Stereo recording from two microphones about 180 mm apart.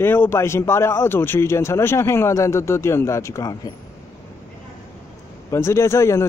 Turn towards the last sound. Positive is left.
turn(degrees=15)  # may be behind; listen again after turning